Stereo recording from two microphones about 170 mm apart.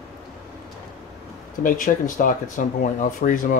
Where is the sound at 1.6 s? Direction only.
50° left (ahead or behind).